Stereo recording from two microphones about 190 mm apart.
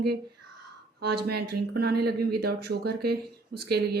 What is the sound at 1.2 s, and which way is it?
Speech, 55° right (ahead or behind).